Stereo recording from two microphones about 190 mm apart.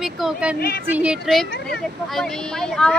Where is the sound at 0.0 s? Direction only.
5° right (ahead or behind).